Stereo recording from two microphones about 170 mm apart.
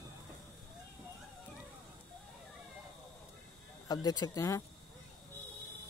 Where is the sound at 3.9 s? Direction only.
20° left (ahead or behind).